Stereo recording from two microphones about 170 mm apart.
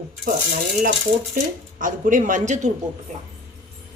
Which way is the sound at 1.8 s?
50° right (ahead or behind).